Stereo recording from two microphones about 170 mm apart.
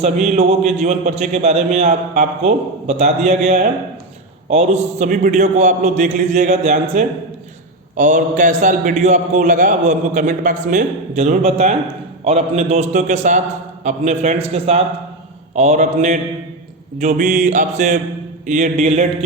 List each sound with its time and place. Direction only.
0.0 s a man's voice: 40° right (ahead or behind)